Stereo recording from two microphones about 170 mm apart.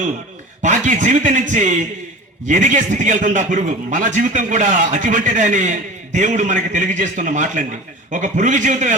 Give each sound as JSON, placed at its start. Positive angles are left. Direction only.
{"t": 0.6, "sound": "a man's voice", "side_deg": -45}